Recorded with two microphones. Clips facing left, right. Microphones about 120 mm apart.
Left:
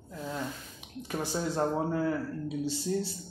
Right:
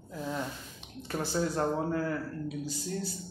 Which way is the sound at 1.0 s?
10° left (ahead or behind).